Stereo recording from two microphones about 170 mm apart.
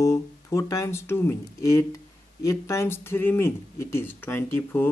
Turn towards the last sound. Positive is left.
turn(degrees=10)  # may be behind; listen again after turning